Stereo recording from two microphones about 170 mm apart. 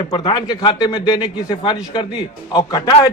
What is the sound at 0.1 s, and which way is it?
A man's voice, 25° left (ahead or behind).